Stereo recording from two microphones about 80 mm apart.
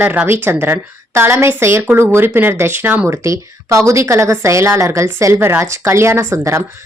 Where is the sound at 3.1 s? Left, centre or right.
Right.